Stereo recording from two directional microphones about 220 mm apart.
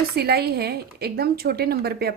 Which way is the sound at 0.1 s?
45° right (ahead or behind).